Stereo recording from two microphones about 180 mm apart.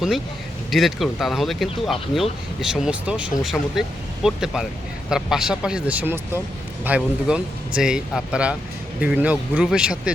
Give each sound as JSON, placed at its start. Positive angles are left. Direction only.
{"t": 0.7, "sound": "speech", "side_deg": 0}